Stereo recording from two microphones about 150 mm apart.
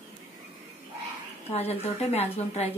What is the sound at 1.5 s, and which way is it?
Speech, 45° left (ahead or behind).